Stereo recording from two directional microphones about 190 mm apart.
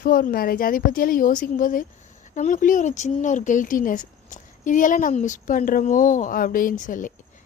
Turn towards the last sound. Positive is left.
turn(degrees=45)  # may be behind; listen again after turning